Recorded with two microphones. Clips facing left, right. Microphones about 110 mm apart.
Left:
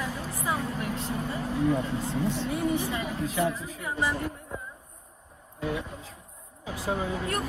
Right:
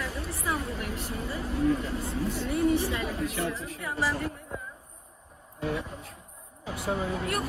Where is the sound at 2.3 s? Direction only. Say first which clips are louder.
Right 2 dB; 30° left (ahead or behind).